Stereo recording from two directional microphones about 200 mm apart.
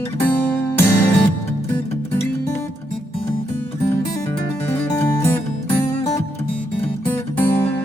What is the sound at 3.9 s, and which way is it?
Music, 15° left (ahead or behind).